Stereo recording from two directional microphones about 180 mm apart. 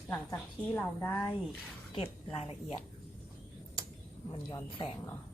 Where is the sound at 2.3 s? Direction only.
35° left (ahead or behind).